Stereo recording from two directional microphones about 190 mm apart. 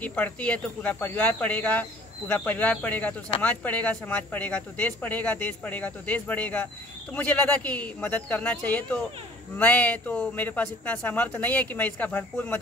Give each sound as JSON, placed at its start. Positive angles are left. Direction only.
{"t": 0.0, "sound": "speech", "side_deg": 10}